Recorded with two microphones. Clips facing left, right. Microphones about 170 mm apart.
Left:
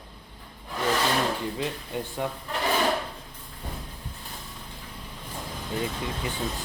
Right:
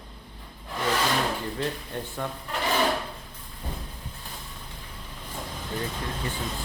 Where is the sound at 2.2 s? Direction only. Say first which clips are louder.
Left 3 dB; 15° left (ahead or behind).